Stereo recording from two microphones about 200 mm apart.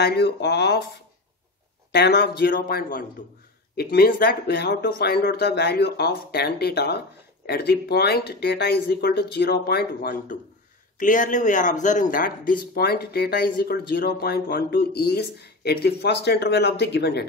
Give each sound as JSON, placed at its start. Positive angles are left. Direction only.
{"t": 0.0, "sound": "speech", "side_deg": 55}
{"t": 1.9, "sound": "speech", "side_deg": 55}